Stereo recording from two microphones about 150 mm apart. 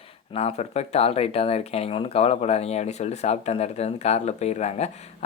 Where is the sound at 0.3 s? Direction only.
45° left (ahead or behind).